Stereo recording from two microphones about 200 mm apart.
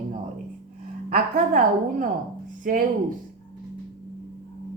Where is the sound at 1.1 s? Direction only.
40° right (ahead or behind).